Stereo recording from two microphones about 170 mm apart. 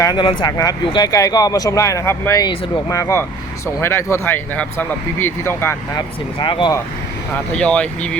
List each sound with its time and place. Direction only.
0.0 s speech: 20° left (ahead or behind)
6.0 s speech: 30° left (ahead or behind)
7.3 s speech: 5° left (ahead or behind)